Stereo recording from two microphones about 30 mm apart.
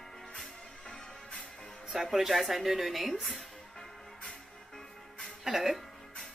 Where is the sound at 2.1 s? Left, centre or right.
Centre.